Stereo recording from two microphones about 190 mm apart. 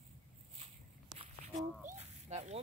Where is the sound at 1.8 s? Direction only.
35° right (ahead or behind).